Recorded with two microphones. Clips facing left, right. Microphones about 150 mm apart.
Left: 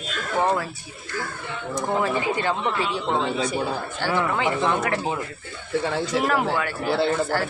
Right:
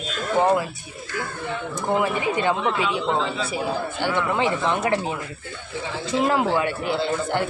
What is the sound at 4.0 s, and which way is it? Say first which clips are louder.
Speech: even; 20° right (ahead or behind).